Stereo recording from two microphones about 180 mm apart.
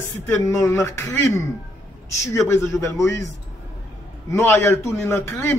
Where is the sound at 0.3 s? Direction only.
15° left (ahead or behind).